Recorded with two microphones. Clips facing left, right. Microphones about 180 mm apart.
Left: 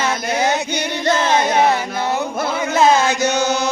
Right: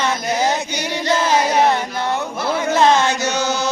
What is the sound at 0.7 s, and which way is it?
Singing, 55° left (ahead or behind).